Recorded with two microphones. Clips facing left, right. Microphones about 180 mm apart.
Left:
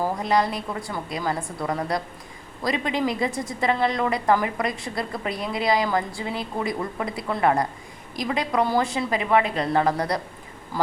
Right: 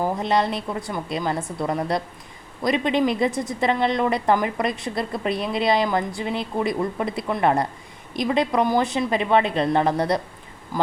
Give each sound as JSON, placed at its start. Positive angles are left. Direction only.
{"t": 0.0, "sound": "a woman's voice", "side_deg": -25}